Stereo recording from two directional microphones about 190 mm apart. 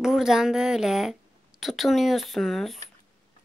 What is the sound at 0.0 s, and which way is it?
A woman's voice, 5° right (ahead or behind).